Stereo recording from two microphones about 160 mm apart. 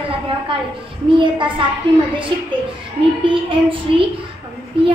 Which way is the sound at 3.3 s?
30° right (ahead or behind).